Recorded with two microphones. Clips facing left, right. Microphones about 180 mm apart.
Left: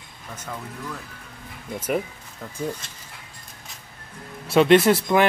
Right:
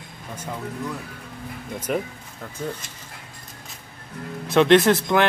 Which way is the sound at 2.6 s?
10° left (ahead or behind).